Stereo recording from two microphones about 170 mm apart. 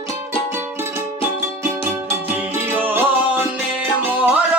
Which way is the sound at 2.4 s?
10° right (ahead or behind).